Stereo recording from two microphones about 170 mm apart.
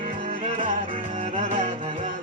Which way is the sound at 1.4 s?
45° right (ahead or behind).